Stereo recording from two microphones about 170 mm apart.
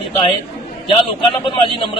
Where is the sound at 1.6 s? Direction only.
30° left (ahead or behind).